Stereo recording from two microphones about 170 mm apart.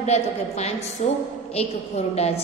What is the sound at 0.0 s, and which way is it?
A woman's voice, 40° left (ahead or behind).